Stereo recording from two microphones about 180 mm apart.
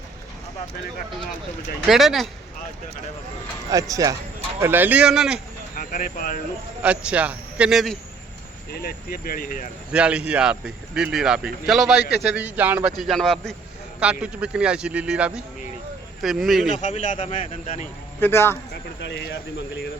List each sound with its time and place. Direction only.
1.9 s speech: centre (ahead or behind)
3.7 s a man's voice: 20° right (ahead or behind); by 5.4 s 5° right (ahead or behind)
5.7 s speech: 50° left (ahead or behind)
6.8 s a man's voice: 5° right (ahead or behind)
8.7 s speech: 55° left (ahead or behind)
9.9 s speech: 5° right (ahead or behind)
16.8 s speech: 40° left (ahead or behind)
18.2 s a man's voice: 15° left (ahead or behind)
18.9 s speech: 70° left (ahead or behind)